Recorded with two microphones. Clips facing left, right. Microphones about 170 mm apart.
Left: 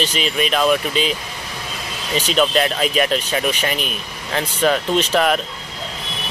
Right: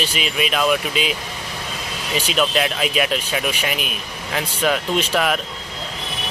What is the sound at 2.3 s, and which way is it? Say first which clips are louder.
Speech: left 3 dB; 5° right (ahead or behind).